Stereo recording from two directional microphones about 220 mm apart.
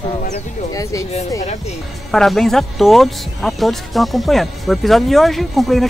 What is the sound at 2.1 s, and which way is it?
Speech, centre (ahead or behind).